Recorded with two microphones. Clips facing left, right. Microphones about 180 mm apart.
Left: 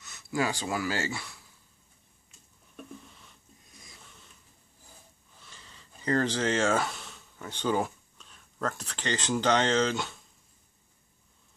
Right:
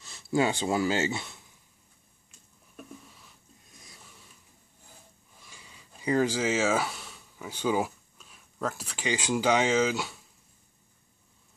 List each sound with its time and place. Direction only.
0.0 s speech: 25° right (ahead or behind)
2.7 s a sound: 5° right (ahead or behind)
5.4 s speech: 10° right (ahead or behind)